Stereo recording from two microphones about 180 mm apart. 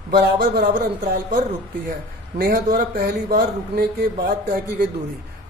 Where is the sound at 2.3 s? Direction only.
55° right (ahead or behind).